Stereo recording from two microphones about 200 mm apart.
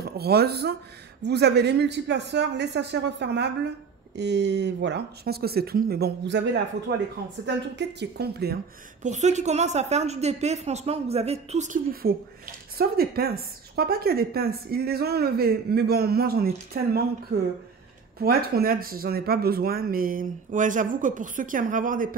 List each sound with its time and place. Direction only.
0.0 s speech: 50° right (ahead or behind)
9.0 s a woman's voice: 35° right (ahead or behind)